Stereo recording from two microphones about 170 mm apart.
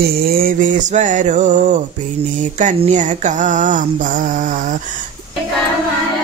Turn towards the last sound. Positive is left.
turn(degrees=-50)  # may be behind; listen again after turning